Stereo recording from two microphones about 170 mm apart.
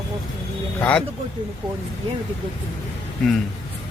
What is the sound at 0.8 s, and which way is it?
Speech, 10° left (ahead or behind).